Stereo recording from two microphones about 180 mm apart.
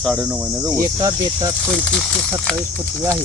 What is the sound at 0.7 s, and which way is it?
Speech, 20° right (ahead or behind).